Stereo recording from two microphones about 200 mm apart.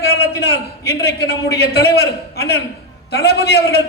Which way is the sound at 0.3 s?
50° left (ahead or behind).